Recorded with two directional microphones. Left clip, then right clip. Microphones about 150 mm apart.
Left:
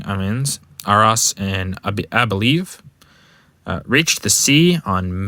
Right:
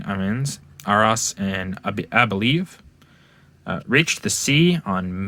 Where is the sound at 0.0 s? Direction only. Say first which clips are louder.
Left 2 dB; 30° left (ahead or behind).